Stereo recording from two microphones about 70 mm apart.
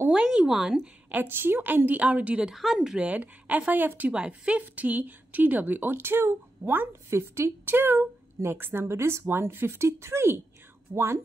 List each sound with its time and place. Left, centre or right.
0.1 s speech: centre
1.1 s speech: right
2.5 s speech: centre
3.1 s speech: right
4.1 s speech: centre
7.1 s speech: right
10.9 s speech: right